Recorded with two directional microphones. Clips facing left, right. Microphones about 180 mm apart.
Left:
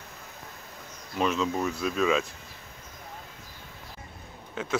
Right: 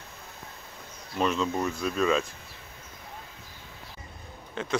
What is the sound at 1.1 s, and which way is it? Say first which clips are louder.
Speech: even; centre (ahead or behind).